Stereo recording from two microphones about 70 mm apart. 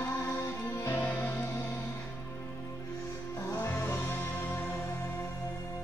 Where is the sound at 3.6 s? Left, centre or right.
Left.